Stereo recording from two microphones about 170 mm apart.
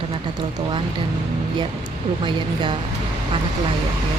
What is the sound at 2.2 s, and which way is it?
Speech, 30° right (ahead or behind).